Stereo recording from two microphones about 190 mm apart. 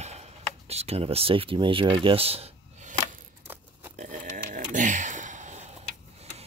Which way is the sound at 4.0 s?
45° right (ahead or behind).